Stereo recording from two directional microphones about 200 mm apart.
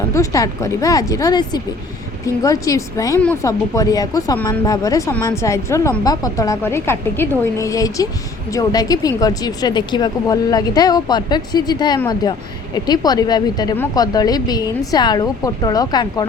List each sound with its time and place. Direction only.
0.1 s speech: 15° left (ahead or behind)